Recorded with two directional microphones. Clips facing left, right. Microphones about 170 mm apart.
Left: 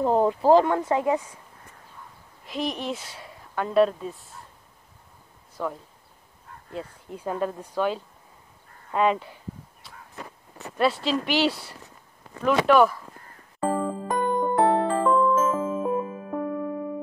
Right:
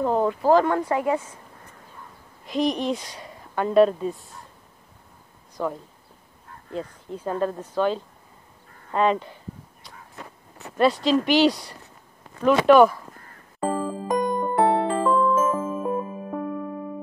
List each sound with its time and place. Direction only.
0.0 s speech: 25° left (ahead or behind)
2.4 s speech: 5° left (ahead or behind)
5.6 s speech: 10° right (ahead or behind)
6.8 s speech: 10° left (ahead or behind)
10.8 s speech: 5° left (ahead or behind)
13.7 s music: centre (ahead or behind)
15.0 s music: centre (ahead or behind)
15.3 s music: 10° right (ahead or behind)